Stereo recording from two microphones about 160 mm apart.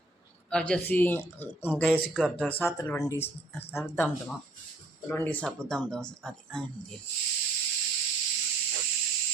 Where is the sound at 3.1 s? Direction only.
15° left (ahead or behind).